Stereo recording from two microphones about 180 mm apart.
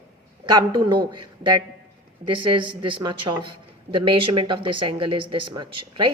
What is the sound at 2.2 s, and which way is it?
A woman's voice, 25° right (ahead or behind).